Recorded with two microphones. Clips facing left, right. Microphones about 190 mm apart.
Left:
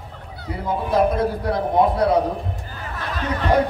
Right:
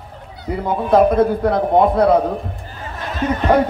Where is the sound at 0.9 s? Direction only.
55° right (ahead or behind).